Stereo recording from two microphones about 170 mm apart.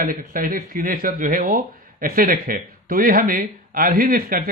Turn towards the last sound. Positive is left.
turn(degrees=-60)  # may be behind; listen again after turning